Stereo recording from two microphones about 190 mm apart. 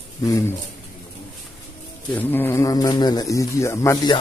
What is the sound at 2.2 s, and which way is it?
Speech, 10° left (ahead or behind).